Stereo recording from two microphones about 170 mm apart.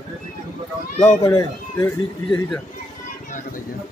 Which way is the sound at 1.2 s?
20° left (ahead or behind).